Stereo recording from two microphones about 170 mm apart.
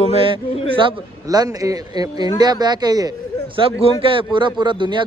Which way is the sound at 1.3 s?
20° right (ahead or behind).